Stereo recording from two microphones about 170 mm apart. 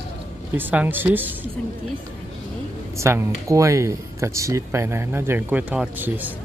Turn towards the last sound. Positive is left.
turn(degrees=-10)  # may be behind; listen again after turning